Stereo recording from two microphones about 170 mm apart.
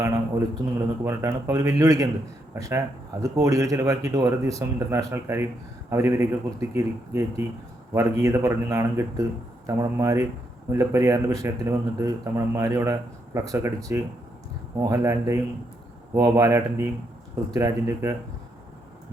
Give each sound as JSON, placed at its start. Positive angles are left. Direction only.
{"t": 0.0, "sound": "a man's voice", "side_deg": -15}